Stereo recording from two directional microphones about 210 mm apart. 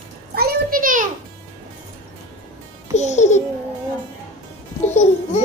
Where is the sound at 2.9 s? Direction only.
35° left (ahead or behind).